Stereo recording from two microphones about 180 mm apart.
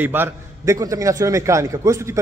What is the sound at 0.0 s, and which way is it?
A man's voice, 10° right (ahead or behind).